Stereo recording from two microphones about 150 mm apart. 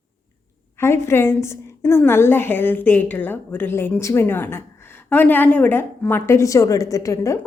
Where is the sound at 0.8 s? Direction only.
15° left (ahead or behind).